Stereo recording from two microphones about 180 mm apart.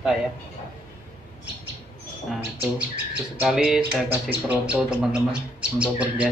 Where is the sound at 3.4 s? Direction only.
5° right (ahead or behind).